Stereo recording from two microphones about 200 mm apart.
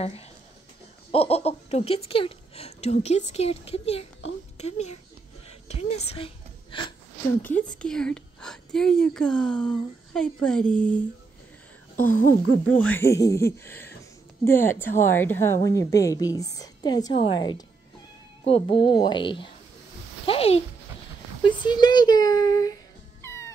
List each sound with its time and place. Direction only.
0.0 s speech: 30° left (ahead or behind)
7.4 s a woman's voice: 5° left (ahead or behind)
12.0 s speech: 45° left (ahead or behind)
12.7 s a woman's voice: 10° left (ahead or behind)
23.2 s music: 15° left (ahead or behind)